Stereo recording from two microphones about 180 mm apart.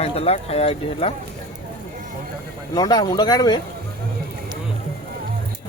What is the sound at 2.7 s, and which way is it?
Speech, 25° left (ahead or behind).